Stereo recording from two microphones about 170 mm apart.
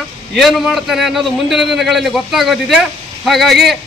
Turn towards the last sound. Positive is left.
turn(degrees=0)  # may be behind; listen again after turning